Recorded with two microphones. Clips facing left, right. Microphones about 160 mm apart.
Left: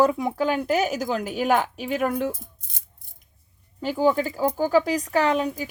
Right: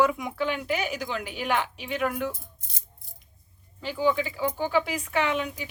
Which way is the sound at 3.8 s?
45° left (ahead or behind).